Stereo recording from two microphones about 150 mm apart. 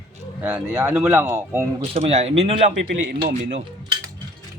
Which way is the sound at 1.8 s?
45° right (ahead or behind).